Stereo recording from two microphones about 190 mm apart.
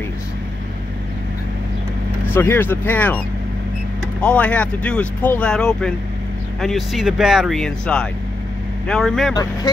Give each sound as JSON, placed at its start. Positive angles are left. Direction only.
{"t": 2.3, "sound": "speech", "side_deg": 10}
{"t": 4.2, "sound": "speech", "side_deg": 5}
{"t": 9.3, "sound": "speech", "side_deg": 20}